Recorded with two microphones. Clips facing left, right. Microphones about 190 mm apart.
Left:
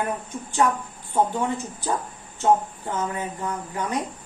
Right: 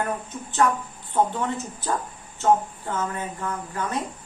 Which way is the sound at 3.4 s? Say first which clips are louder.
Left 1 dB; 15° left (ahead or behind).